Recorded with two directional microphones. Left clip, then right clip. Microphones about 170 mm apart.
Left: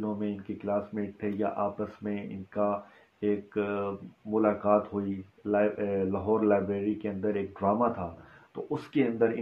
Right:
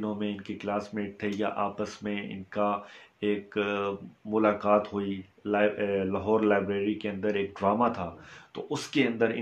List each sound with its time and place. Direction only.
0.0 s speech: 15° right (ahead or behind)